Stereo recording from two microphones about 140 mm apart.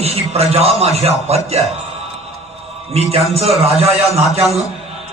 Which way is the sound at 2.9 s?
45° right (ahead or behind).